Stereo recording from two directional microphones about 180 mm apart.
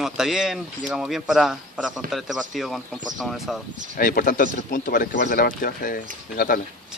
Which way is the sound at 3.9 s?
50° left (ahead or behind).